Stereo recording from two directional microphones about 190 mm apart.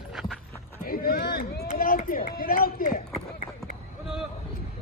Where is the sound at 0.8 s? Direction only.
50° left (ahead or behind).